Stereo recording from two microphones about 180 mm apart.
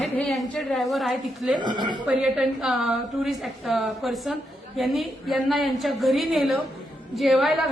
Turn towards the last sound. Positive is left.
turn(degrees=0)  # may be behind; listen again after turning